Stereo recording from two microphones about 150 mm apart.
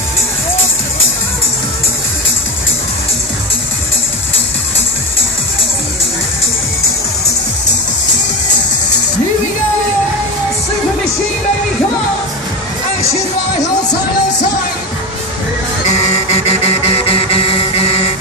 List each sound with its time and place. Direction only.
15.9 s music: 45° left (ahead or behind)